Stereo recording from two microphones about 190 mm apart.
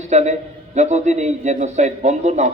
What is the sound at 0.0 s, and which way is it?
A man's voice, 35° right (ahead or behind).